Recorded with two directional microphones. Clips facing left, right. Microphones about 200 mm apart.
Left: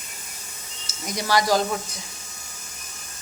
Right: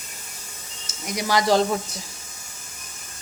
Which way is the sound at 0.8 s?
20° right (ahead or behind).